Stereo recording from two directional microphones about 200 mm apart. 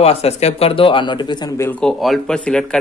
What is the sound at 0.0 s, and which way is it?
Speech, 30° left (ahead or behind).